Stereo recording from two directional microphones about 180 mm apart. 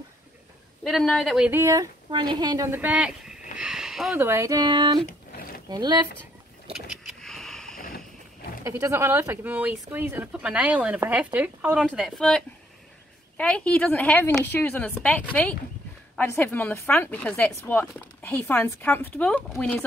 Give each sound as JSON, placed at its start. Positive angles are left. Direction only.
{"t": 0.8, "sound": "speech", "side_deg": 0}
{"t": 1.5, "sound": "speech", "side_deg": -15}
{"t": 3.5, "sound": "a sound", "side_deg": -5}
{"t": 4.2, "sound": "speech", "side_deg": -15}
{"t": 6.7, "sound": "vehicle", "side_deg": 0}
{"t": 8.6, "sound": "speech", "side_deg": -15}